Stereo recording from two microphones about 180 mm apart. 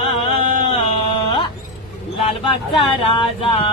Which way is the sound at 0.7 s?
30° left (ahead or behind).